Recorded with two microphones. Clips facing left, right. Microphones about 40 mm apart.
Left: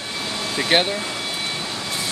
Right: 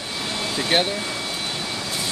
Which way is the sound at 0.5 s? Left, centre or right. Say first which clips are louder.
Left 2 dB; left.